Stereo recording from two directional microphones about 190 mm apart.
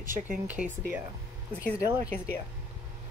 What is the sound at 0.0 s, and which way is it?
Speech, 45° right (ahead or behind).